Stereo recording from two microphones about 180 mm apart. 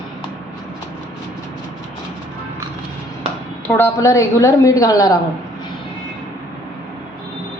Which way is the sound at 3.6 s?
10° left (ahead or behind).